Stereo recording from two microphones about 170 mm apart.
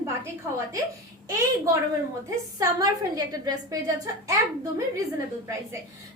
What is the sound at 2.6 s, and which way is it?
Speech, 20° right (ahead or behind).